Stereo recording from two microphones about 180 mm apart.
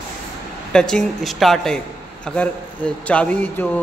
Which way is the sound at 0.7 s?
5° left (ahead or behind).